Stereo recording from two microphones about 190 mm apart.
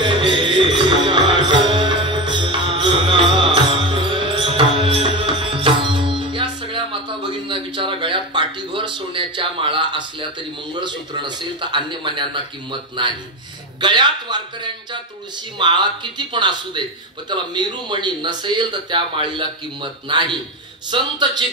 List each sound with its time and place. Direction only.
0.0 s music: 25° right (ahead or behind)
7.4 s a sound: 25° right (ahead or behind)
10.7 s speech: 25° right (ahead or behind)